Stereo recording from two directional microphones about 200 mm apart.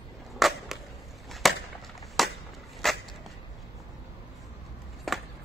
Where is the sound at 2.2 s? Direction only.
Centre (ahead or behind).